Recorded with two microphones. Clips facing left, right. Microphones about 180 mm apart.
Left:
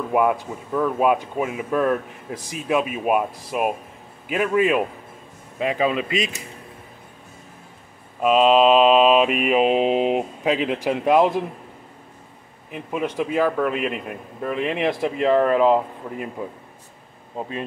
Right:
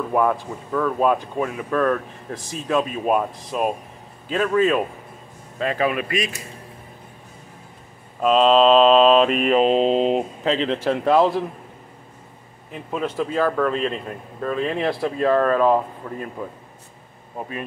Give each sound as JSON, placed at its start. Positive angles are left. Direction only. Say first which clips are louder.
{"t": 0.1, "sound": "a man's voice", "louder": "left 1 dB", "side_deg": 10}
{"t": 8.2, "sound": "a man's voice", "louder": "even", "side_deg": 5}
{"t": 12.7, "sound": "a man's voice", "louder": "even", "side_deg": 10}